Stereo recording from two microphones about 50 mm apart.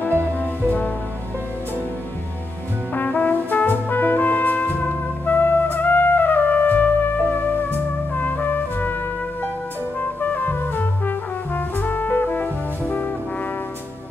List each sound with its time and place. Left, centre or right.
0.4 s music: left
2.9 s brass instrument: left
5.2 s music: left
9.9 s brass instrument: left